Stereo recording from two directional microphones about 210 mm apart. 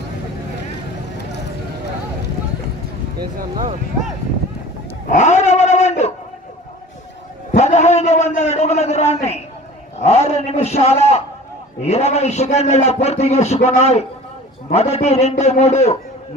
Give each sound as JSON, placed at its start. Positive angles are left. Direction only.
{"t": 5.1, "sound": "cat", "side_deg": 35}
{"t": 7.5, "sound": "a sound", "side_deg": 35}
{"t": 11.8, "sound": "a man's voice", "side_deg": 30}